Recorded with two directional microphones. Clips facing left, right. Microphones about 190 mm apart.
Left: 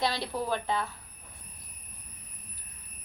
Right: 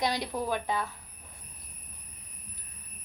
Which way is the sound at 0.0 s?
15° right (ahead or behind).